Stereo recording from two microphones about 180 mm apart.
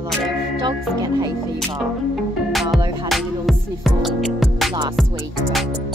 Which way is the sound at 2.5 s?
Centre (ahead or behind).